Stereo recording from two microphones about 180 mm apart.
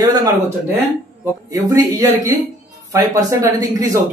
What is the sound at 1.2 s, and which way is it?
Speech, 15° right (ahead or behind).